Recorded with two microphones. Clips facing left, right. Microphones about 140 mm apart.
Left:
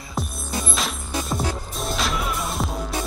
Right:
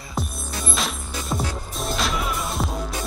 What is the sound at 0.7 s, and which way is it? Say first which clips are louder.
Music: even; centre (ahead or behind).